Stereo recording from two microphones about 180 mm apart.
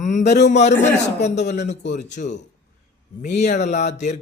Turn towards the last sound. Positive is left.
turn(degrees=40)  # may be behind; listen again after turning